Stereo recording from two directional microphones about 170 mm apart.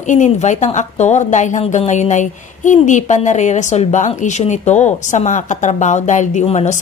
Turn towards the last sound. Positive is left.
turn(degrees=40)  # may be behind; listen again after turning